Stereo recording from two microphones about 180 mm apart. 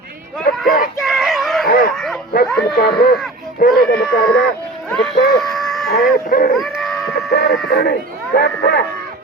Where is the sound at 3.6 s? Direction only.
55° left (ahead or behind).